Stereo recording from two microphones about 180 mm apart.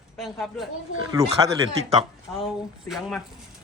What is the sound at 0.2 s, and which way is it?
Speech, centre (ahead or behind).